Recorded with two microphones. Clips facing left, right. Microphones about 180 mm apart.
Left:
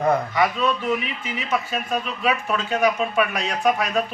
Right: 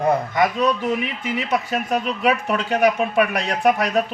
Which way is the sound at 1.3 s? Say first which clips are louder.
Right 3 dB; 65° right (ahead or behind).